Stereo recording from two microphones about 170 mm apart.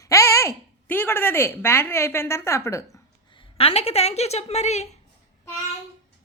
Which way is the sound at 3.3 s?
35° left (ahead or behind).